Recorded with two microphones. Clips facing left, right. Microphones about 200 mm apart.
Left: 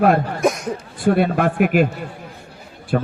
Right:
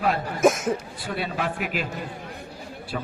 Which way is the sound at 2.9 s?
55° left (ahead or behind).